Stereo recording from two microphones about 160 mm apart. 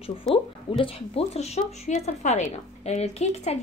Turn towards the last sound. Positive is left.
turn(degrees=45)  # may be behind; listen again after turning